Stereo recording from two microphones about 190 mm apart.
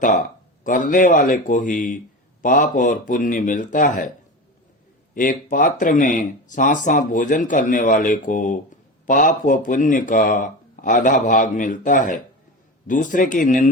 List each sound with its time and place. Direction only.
0.6 s speech: 45° left (ahead or behind)
5.1 s speech: 45° left (ahead or behind)